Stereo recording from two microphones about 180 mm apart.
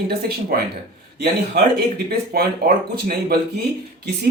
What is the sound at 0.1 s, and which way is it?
Speech, 60° right (ahead or behind).